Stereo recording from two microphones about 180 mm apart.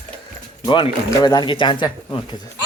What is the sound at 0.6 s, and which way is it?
Speech, 25° left (ahead or behind).